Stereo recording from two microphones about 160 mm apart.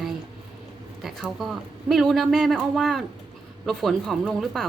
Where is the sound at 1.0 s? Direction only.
Centre (ahead or behind).